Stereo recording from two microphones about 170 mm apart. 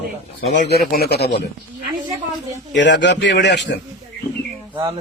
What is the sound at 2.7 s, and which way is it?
A man's voice, 90° left.